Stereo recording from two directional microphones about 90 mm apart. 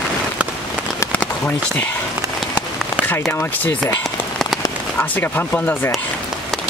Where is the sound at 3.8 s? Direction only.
5° left (ahead or behind).